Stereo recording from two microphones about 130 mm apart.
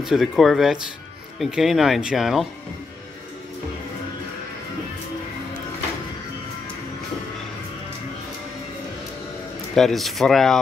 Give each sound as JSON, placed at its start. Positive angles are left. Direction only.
{"t": 0.0, "sound": "speech", "side_deg": 0}
{"t": 9.8, "sound": "speech", "side_deg": 0}